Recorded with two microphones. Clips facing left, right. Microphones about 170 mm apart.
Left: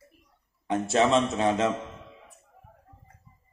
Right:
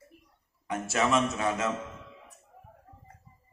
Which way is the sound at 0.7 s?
30° left (ahead or behind).